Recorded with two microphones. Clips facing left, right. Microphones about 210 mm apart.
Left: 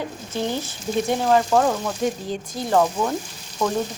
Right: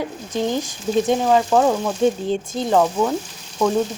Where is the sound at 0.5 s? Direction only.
15° right (ahead or behind).